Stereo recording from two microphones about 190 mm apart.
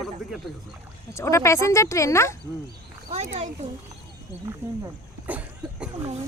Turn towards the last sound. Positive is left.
turn(degrees=-5)  # may be behind; listen again after turning